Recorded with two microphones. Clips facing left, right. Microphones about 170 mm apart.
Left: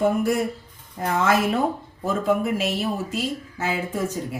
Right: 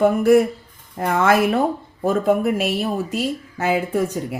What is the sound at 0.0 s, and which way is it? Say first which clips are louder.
Speech: right 7 dB; 65° right (ahead or behind).